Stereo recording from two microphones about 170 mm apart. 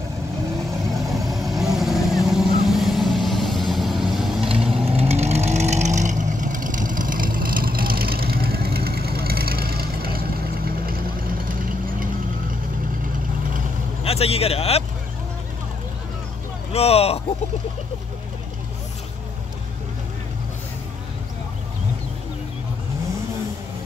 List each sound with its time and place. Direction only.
1.3 s vehicle: centre (ahead or behind)
4.8 s vehicle: 35° right (ahead or behind); by 11.5 s 60° right (ahead or behind)
14.0 s a man's voice: 35° left (ahead or behind)
16.7 s speech: 35° left (ahead or behind)